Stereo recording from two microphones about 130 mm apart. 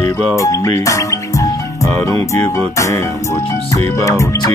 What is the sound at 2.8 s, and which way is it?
Speech, 25° left (ahead or behind).